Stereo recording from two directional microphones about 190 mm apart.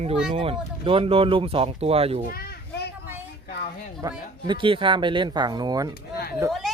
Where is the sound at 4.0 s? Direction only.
20° right (ahead or behind).